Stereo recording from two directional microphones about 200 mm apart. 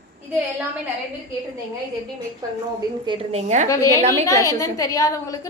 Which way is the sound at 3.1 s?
35° right (ahead or behind).